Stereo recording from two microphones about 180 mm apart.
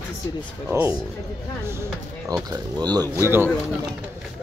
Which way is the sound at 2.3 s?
20° right (ahead or behind).